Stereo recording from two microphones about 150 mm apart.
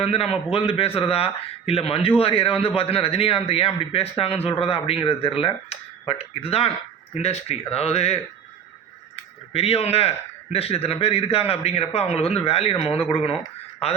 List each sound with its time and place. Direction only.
0.0 s a man's voice: 45° left (ahead or behind)
9.5 s a man's voice: 40° left (ahead or behind)